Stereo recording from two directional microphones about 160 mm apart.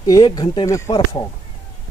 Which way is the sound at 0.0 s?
25° left (ahead or behind).